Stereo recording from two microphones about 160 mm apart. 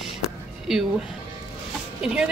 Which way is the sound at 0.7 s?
Centre (ahead or behind).